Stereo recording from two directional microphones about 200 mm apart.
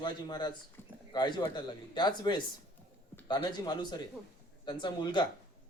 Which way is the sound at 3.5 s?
20° left (ahead or behind).